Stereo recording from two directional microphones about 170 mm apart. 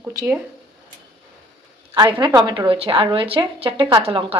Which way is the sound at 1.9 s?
30° right (ahead or behind).